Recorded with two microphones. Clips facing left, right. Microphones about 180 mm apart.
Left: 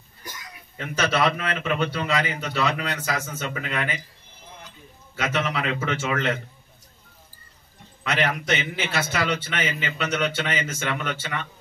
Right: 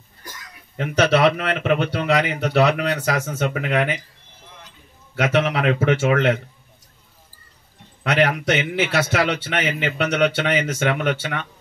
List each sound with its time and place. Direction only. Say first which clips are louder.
0.7 s a man's voice: right 6 dB; 70° right (ahead or behind)
5.1 s a man's voice: right 6 dB; 65° right (ahead or behind)
8.0 s a man's voice: right 6 dB; 65° right (ahead or behind)